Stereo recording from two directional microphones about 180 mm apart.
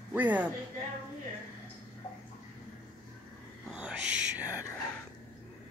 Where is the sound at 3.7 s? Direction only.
5° right (ahead or behind).